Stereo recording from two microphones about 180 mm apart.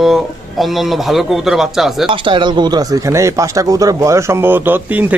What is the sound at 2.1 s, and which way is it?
A man's voice, 30° right (ahead or behind).